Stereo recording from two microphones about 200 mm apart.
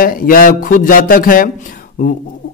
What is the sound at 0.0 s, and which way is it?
A man's voice, 45° left (ahead or behind).